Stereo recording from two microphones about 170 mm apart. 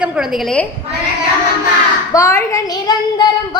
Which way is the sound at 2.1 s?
15° left (ahead or behind).